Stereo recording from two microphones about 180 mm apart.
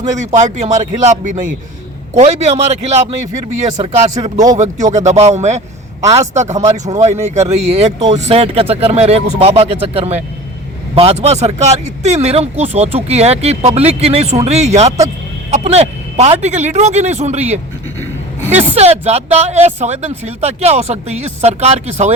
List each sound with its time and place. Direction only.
0.2 s speech: 35° right (ahead or behind)
6.7 s speech: 20° right (ahead or behind)
7.0 s speech: 40° right (ahead or behind)
18.7 s speech: 35° right (ahead or behind)